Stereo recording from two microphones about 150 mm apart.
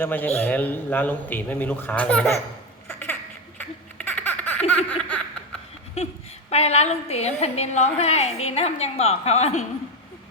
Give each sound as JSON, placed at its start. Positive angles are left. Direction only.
{"t": 0.0, "sound": "a man's voice", "side_deg": 15}
{"t": 3.9, "sound": "baby laughter", "side_deg": 10}
{"t": 4.9, "sound": "laughter", "side_deg": 10}
{"t": 6.0, "sound": "a sound", "side_deg": 45}
{"t": 6.5, "sound": "a woman's voice", "side_deg": 45}